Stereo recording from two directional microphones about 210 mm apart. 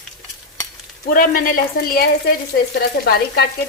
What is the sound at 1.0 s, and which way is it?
Frying, 40° left (ahead or behind).